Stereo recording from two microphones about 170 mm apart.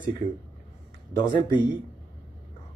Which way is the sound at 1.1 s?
25° left (ahead or behind).